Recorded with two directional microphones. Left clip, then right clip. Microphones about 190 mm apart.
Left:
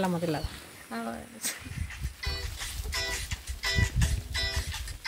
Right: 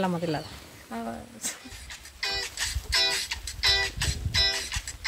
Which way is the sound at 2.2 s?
30° right (ahead or behind).